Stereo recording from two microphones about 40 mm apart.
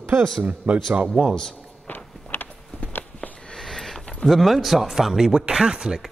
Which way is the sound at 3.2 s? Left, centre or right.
Left.